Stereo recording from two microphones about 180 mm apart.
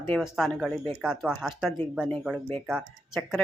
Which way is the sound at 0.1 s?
Centre (ahead or behind).